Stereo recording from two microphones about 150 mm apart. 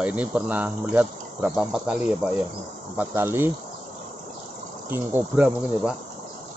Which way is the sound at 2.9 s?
15° right (ahead or behind).